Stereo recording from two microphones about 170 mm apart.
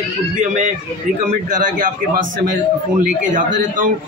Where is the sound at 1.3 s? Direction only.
55° right (ahead or behind).